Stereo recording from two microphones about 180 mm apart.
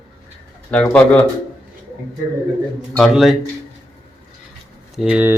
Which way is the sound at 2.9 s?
Centre (ahead or behind).